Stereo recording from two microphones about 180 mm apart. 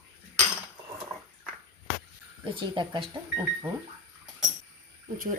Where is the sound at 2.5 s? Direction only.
30° right (ahead or behind).